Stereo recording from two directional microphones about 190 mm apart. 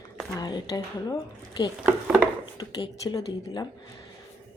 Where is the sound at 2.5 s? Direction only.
20° left (ahead or behind).